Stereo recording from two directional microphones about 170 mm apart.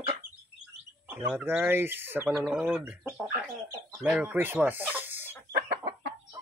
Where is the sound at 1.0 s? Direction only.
10° right (ahead or behind).